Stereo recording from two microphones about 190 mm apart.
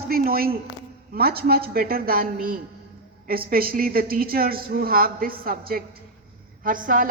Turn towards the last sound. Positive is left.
turn(degrees=-45)  # may be behind; listen again after turning